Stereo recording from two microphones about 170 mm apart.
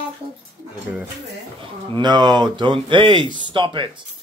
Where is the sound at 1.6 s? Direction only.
25° right (ahead or behind).